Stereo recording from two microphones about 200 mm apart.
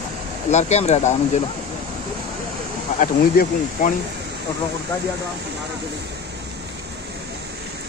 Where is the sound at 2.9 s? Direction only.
40° left (ahead or behind).